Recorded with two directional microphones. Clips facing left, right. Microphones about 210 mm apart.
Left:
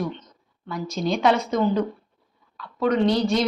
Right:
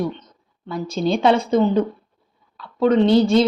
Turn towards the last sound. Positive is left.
turn(degrees=-30)  # may be behind; listen again after turning